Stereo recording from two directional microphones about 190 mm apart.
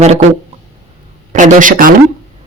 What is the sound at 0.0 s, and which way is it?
Speech, 35° right (ahead or behind).